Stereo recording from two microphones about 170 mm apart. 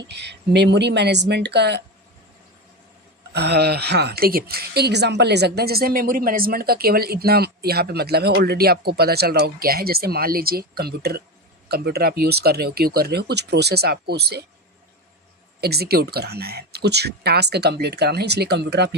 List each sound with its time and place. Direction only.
0.1 s speech: 85° right
3.3 s a woman's voice: 75° right (ahead or behind)
15.6 s speech: 70° right (ahead or behind)